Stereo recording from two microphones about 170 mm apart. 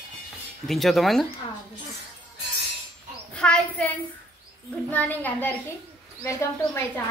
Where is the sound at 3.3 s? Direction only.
5° left (ahead or behind).